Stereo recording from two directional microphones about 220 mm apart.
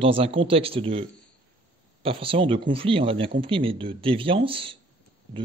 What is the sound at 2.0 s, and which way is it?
Speech, 25° right (ahead or behind).